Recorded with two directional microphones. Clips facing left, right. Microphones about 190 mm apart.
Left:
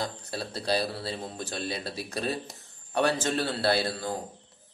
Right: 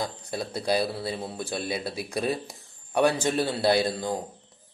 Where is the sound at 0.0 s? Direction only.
15° right (ahead or behind).